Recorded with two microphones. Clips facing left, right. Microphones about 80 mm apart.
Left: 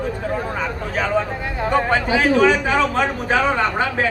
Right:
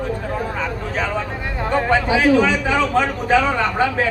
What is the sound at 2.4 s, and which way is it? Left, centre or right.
Speech, left.